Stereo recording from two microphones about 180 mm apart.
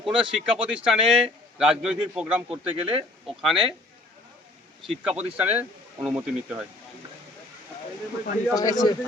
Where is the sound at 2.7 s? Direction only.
30° right (ahead or behind).